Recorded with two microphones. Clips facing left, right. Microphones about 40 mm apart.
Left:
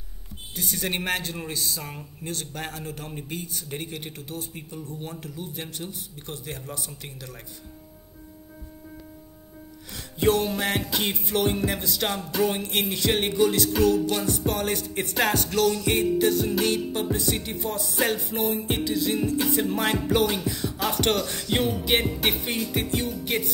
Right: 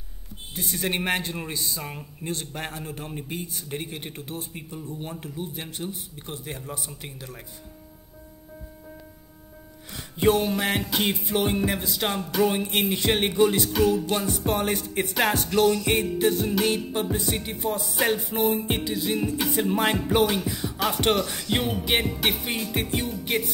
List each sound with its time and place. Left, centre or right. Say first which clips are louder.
0.6 s music: right 1 dB; centre
4.1 s music: right 1 dB; right
4.6 s music: right 1 dB; centre
6.1 s music: even; centre
10.1 s music: right 1 dB; right
10.5 s music: right 1 dB; centre
12.9 s music: even; right
22.8 s music: left 1 dB; right
23.2 s music: right 1 dB; centre